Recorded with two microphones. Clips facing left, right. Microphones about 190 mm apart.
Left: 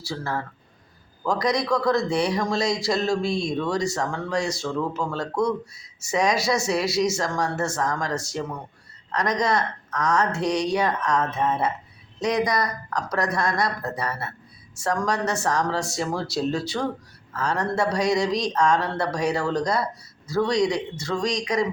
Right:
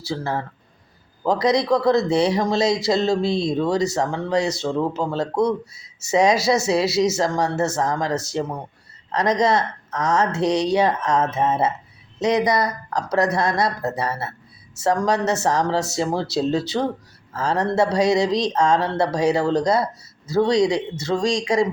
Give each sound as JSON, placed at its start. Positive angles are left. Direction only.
{"t": 0.1, "sound": "a man's voice", "side_deg": -25}